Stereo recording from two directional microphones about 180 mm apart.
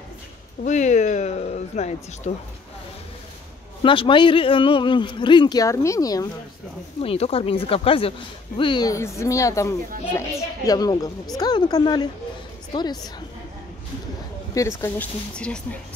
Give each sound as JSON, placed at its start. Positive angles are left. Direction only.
{"t": 0.7, "sound": "speech", "side_deg": 40}
{"t": 3.8, "sound": "a man's voice", "side_deg": 30}
{"t": 7.0, "sound": "a man's voice", "side_deg": 35}
{"t": 14.5, "sound": "speech", "side_deg": 15}